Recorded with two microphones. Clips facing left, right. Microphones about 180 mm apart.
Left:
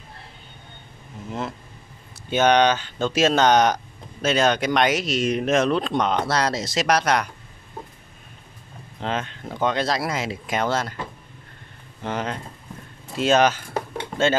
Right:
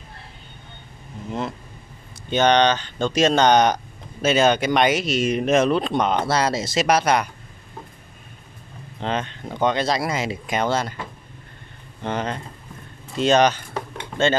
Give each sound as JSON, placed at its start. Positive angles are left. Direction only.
{"t": 1.2, "sound": "a sound", "side_deg": 5}
{"t": 2.2, "sound": "speech", "side_deg": 5}
{"t": 9.0, "sound": "speech", "side_deg": 0}
{"t": 12.0, "sound": "speech", "side_deg": 5}